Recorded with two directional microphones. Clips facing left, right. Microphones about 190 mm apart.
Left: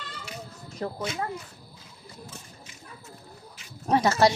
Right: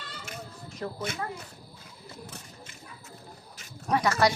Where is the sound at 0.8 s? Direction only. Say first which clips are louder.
Left 3 dB; 30° left (ahead or behind).